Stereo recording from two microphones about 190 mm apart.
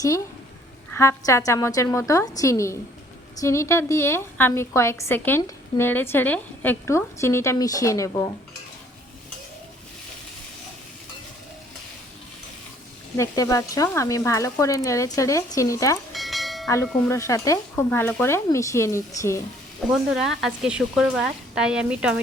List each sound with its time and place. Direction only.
0.9 s a woman's voice: 15° left (ahead or behind)
13.1 s a woman's voice: 20° left (ahead or behind)
16.1 s bell: centre (ahead or behind)
16.6 s a woman's voice: 15° left (ahead or behind)
19.9 s speech: centre (ahead or behind)